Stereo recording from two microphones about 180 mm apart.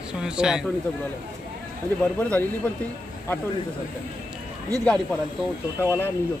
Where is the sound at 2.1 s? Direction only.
10° left (ahead or behind).